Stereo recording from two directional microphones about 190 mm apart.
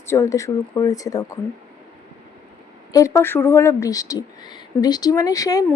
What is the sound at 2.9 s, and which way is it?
Speech, 15° left (ahead or behind).